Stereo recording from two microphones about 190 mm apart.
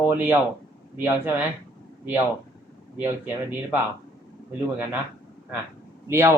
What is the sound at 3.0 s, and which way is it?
Speech, 10° right (ahead or behind).